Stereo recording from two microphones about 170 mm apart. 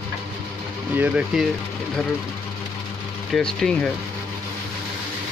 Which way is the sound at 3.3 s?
5° left (ahead or behind).